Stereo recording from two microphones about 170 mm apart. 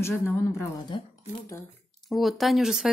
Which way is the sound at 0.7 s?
25° left (ahead or behind).